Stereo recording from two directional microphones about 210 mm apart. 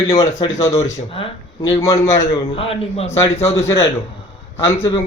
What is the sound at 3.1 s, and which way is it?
A man's voice, 15° left (ahead or behind).